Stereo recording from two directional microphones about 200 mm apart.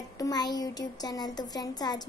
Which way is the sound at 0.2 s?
20° left (ahead or behind).